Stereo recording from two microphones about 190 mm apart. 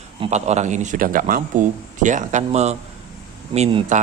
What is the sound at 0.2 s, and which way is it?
A man's voice, 35° right (ahead or behind).